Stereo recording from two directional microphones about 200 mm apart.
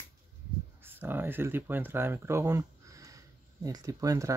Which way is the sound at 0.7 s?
10° right (ahead or behind).